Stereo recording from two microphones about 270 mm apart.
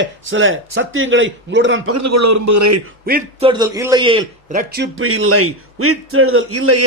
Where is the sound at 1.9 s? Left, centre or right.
Right.